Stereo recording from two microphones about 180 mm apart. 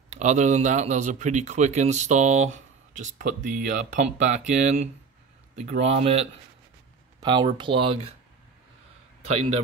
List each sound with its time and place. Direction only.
0.1 s a man's voice: 40° right (ahead or behind)
7.2 s speech: 25° right (ahead or behind)